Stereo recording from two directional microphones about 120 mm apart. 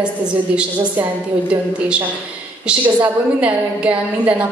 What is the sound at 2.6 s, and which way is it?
A woman's voice, 10° right (ahead or behind).